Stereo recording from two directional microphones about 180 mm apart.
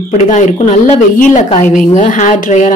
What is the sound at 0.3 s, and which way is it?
A woman's voice, 40° left (ahead or behind).